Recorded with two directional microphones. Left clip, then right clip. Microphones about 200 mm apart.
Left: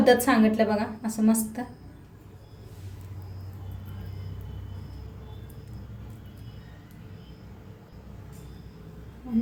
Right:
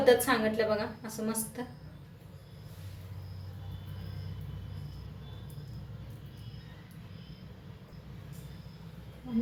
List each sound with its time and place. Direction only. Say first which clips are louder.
0.0 s a woman's voice: left 4 dB; 55° left (ahead or behind)